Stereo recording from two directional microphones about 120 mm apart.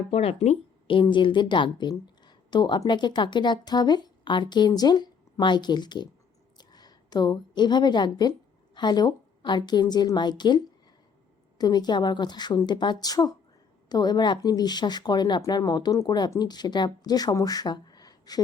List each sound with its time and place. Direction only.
0.1 s a woman's voice: 55° left (ahead or behind); by 18.4 s 35° left (ahead or behind)